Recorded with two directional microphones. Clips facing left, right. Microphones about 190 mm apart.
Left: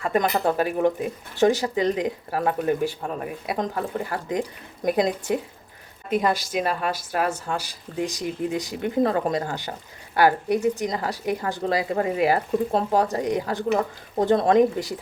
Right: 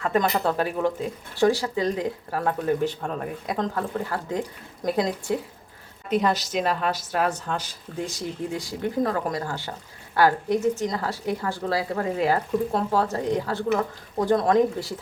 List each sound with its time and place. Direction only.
0.0 s speech: 15° left (ahead or behind)
6.5 s speech: 10° left (ahead or behind)